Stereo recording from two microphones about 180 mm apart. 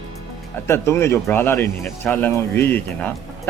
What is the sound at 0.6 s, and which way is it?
Speech, 15° left (ahead or behind).